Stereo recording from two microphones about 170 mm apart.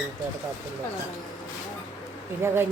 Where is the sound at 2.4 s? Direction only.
15° right (ahead or behind).